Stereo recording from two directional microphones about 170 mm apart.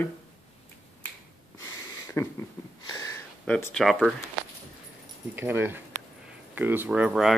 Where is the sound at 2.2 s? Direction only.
15° left (ahead or behind).